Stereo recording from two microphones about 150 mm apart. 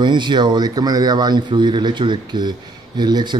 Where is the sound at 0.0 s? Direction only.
30° right (ahead or behind).